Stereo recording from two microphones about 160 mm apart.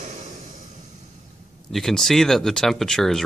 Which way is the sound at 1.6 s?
Centre (ahead or behind).